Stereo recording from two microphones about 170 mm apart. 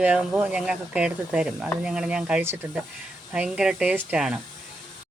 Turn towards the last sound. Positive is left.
turn(degrees=-5)  # may be behind; listen again after turning